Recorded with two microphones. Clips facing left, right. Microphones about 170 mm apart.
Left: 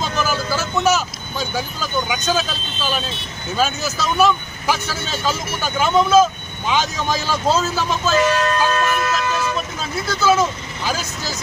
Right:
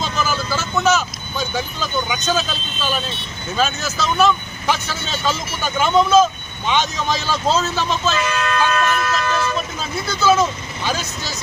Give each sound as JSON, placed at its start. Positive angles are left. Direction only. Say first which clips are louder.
{"t": 0.0, "sound": "vehicle", "louder": "left 1 dB", "side_deg": 10}
{"t": 3.6, "sound": "speech", "louder": "even", "side_deg": 10}
{"t": 8.1, "sound": "speech", "louder": "left 4 dB", "side_deg": 40}
{"t": 9.0, "sound": "speech", "louder": "even", "side_deg": 20}
{"t": 10.1, "sound": "speech", "louder": "right 1 dB", "side_deg": 5}